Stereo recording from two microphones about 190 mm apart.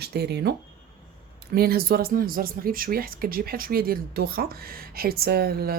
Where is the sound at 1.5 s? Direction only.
55° right (ahead or behind).